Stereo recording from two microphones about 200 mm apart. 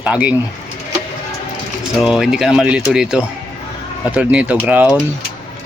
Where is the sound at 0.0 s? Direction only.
5° right (ahead or behind).